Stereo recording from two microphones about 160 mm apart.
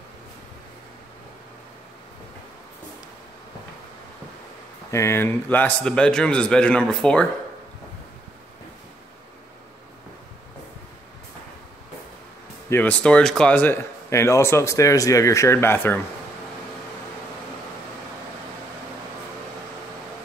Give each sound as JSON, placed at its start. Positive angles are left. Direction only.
{"t": 4.9, "sound": "speech", "side_deg": 15}
{"t": 12.6, "sound": "speech", "side_deg": 10}